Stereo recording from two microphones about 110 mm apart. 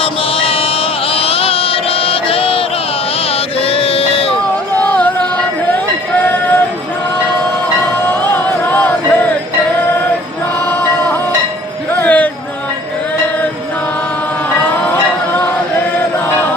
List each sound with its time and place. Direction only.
0.0 s music: 55° left (ahead or behind)
3.2 s a sound: 60° left (ahead or behind)
4.7 s music: 15° left (ahead or behind)
8.7 s a sound: 15° left (ahead or behind)
10.7 s music: 15° left (ahead or behind)
14.8 s music: 15° left (ahead or behind)